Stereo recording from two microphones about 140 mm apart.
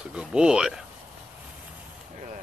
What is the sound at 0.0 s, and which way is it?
Speech, 5° right (ahead or behind).